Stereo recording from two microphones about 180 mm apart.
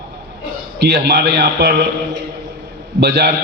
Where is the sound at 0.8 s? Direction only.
65° right (ahead or behind).